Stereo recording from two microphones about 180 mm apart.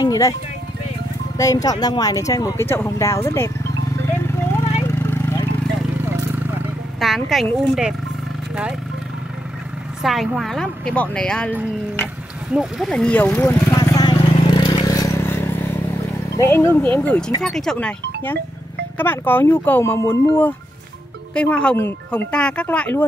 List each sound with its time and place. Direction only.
0.0 s music: 20° left (ahead or behind)
1.4 s speech: 20° left (ahead or behind)
4.8 s a sound: 15° left (ahead or behind)
7.0 s speech: centre (ahead or behind)
10.0 s speech: centre (ahead or behind)
12.5 s speech: centre (ahead or behind)
13.7 s vehicle: 20° left (ahead or behind)
17.4 s speech: centre (ahead or behind)